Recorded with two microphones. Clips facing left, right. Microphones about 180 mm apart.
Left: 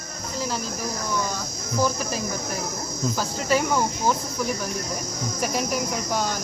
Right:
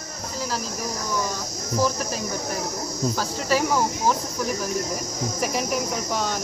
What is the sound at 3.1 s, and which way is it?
Speech, centre (ahead or behind).